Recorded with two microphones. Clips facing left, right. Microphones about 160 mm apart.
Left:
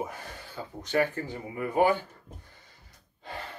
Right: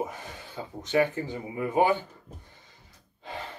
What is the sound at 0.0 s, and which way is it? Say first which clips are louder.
Speech: right 2 dB; 20° right (ahead or behind).